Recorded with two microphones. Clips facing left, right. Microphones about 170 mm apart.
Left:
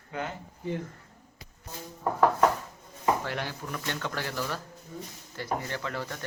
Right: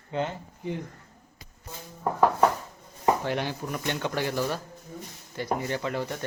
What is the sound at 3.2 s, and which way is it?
Speech, 20° right (ahead or behind).